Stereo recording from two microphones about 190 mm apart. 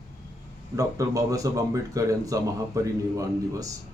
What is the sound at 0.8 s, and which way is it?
Speech, 15° right (ahead or behind).